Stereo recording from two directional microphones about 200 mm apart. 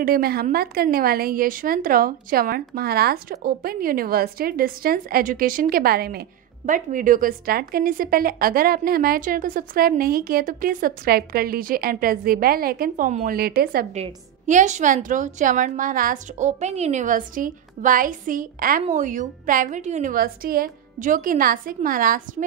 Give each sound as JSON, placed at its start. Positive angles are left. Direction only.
{"t": 0.0, "sound": "a woman's voice", "side_deg": -50}
{"t": 13.9, "sound": "a woman's voice", "side_deg": -35}